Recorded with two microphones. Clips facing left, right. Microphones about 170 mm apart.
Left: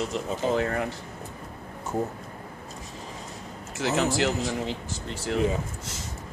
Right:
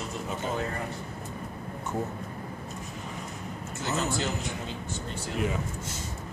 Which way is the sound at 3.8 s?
90° left.